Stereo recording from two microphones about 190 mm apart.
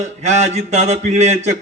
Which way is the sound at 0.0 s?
35° right (ahead or behind).